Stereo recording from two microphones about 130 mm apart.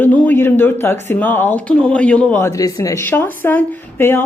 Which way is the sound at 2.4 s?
25° left (ahead or behind).